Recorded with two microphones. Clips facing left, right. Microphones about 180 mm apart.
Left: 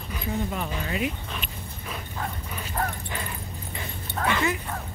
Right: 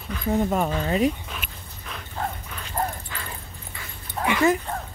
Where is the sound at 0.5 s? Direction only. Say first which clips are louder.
Right 7 dB; 40° right (ahead or behind).